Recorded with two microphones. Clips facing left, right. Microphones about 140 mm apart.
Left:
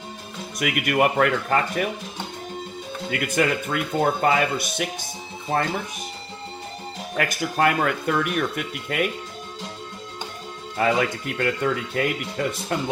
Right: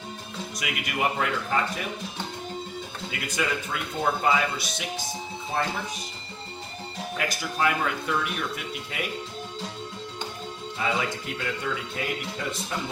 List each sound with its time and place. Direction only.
0.6 s speech: 55° left (ahead or behind)
3.1 s speech: 55° left (ahead or behind)
7.2 s speech: 55° left (ahead or behind)
10.8 s speech: 60° left (ahead or behind)